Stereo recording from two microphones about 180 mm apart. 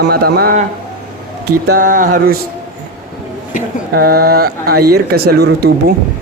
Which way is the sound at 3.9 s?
55° right (ahead or behind).